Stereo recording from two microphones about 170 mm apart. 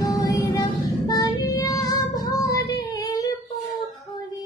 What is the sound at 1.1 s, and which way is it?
Child singing, 20° left (ahead or behind).